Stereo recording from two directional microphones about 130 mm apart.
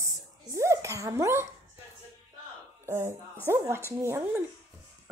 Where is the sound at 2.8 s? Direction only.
20° right (ahead or behind).